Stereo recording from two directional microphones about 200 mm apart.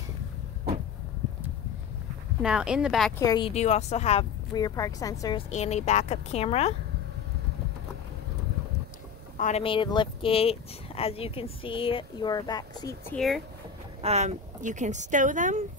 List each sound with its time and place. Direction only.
2.4 s speech: 5° right (ahead or behind)
3.2 s speech: 20° left (ahead or behind)
4.6 s a woman's voice: 20° left (ahead or behind)
5.5 s speech: 35° left (ahead or behind)
9.4 s speech: 30° left (ahead or behind)
13.1 s speech: centre (ahead or behind)
14.0 s speech: 35° right (ahead or behind)